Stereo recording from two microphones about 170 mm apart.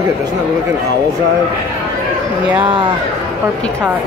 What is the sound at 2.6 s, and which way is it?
Speech, 30° right (ahead or behind).